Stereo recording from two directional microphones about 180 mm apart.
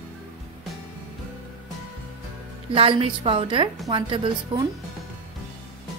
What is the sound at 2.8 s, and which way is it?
A woman's voice, 30° right (ahead or behind).